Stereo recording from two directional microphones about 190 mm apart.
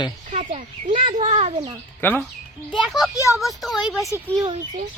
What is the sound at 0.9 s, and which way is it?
Speech, 40° right (ahead or behind).